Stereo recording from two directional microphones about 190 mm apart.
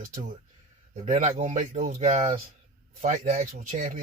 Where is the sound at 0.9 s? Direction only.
40° right (ahead or behind).